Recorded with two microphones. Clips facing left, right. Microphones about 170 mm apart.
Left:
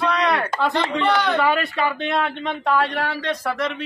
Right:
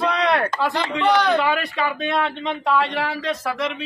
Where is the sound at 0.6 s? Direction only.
Centre (ahead or behind).